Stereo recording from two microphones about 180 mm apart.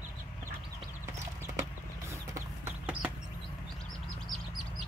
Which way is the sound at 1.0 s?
15° right (ahead or behind).